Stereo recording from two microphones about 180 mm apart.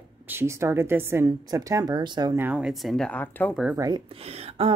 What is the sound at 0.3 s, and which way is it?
Speech, 15° right (ahead or behind).